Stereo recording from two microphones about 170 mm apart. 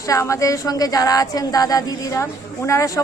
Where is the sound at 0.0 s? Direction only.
20° left (ahead or behind).